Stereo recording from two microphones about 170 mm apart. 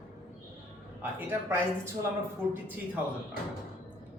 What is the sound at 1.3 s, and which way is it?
Speech, 15° right (ahead or behind).